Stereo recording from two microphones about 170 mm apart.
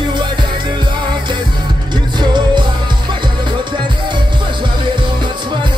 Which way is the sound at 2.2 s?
25° right (ahead or behind).